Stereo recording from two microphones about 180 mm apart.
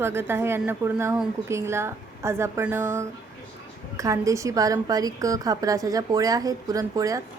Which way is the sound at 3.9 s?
15° right (ahead or behind).